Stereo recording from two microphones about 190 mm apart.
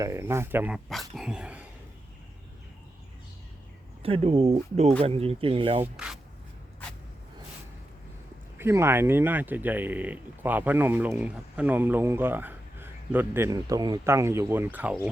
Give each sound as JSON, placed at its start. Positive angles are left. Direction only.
{"t": 0.0, "sound": "speech", "side_deg": -15}
{"t": 0.9, "sound": "dog", "side_deg": 0}
{"t": 4.0, "sound": "speech", "side_deg": -30}
{"t": 5.8, "sound": "speech", "side_deg": -5}
{"t": 8.5, "sound": "speech", "side_deg": -15}